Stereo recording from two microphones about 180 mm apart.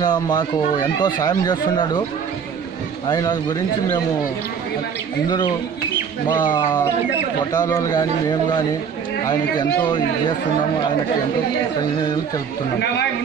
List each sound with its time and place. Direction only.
0.0 s speech: 25° left (ahead or behind)
3.1 s speech: 20° left (ahead or behind)
6.5 s speech: 20° left (ahead or behind)